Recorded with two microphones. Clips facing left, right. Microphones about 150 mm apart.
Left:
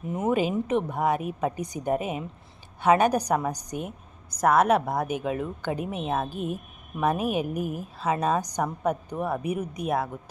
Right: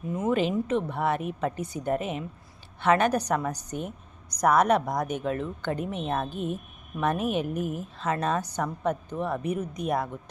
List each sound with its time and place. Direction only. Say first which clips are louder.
0.3 s speech: left 1 dB; 10° left (ahead or behind)